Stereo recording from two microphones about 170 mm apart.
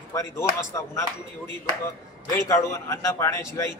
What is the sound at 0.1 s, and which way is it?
Speech, 20° left (ahead or behind).